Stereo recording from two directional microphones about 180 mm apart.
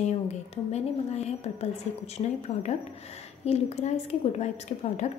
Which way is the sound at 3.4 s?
35° left (ahead or behind).